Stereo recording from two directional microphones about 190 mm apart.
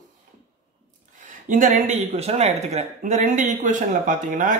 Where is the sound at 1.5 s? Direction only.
45° right (ahead or behind).